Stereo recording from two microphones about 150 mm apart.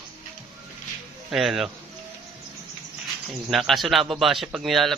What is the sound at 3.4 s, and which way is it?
A man's voice, centre (ahead or behind).